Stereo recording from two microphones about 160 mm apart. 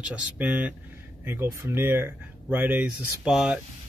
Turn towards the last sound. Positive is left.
turn(degrees=-5)  # may be behind; listen again after turning